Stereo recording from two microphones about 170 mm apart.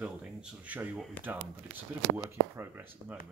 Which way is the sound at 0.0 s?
5° right (ahead or behind).